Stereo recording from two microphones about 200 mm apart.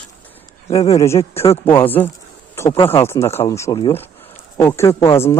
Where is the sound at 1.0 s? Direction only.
15° left (ahead or behind).